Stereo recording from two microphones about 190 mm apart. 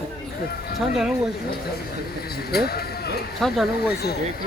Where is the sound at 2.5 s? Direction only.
55° left (ahead or behind).